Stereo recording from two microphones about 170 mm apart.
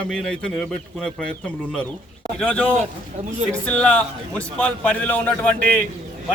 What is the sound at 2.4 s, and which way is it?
Speech, 5° left (ahead or behind).